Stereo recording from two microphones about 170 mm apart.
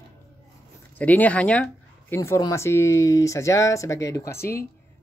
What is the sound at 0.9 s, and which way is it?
Speech, 10° left (ahead or behind).